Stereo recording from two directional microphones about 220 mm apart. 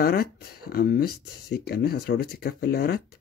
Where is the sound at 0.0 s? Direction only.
45° left (ahead or behind).